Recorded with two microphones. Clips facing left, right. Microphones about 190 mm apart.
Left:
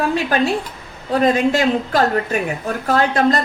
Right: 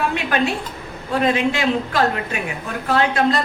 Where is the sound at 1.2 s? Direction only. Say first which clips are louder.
Left 4 dB; 40° left (ahead or behind).